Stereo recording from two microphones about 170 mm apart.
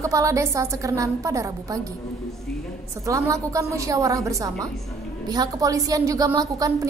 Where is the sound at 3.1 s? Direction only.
20° right (ahead or behind).